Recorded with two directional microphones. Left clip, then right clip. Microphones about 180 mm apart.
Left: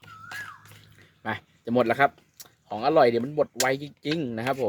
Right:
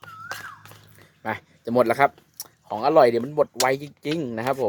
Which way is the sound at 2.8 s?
30° left (ahead or behind).